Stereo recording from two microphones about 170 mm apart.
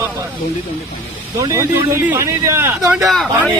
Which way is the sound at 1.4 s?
15° right (ahead or behind).